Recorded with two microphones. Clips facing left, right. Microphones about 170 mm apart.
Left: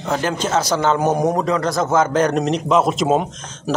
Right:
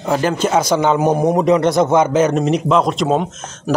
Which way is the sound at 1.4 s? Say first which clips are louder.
Right 6 dB; 20° right (ahead or behind).